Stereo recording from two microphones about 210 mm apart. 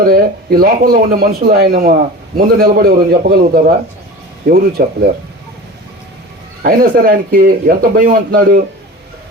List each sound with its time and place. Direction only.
0.1 s speech: 45° right (ahead or behind)
6.6 s speech: 45° right (ahead or behind)